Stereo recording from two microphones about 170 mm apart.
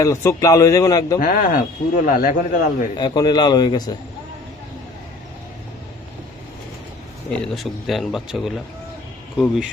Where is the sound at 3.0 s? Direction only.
25° left (ahead or behind).